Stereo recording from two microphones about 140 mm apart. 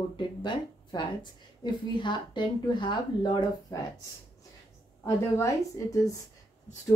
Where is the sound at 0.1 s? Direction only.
35° left (ahead or behind).